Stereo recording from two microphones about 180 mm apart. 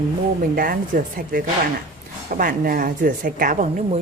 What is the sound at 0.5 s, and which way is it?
A woman's voice, 55° right (ahead or behind).